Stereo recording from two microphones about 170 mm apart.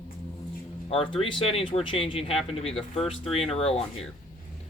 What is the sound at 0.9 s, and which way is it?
Speech, 30° left (ahead or behind).